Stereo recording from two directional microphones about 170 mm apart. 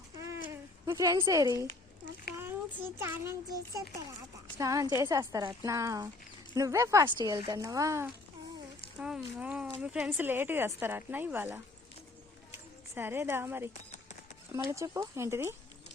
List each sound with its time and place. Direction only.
0.5 s a child's voice: 20° right (ahead or behind)
9.0 s speech: 5° right (ahead or behind)
12.9 s speech: 15° right (ahead or behind)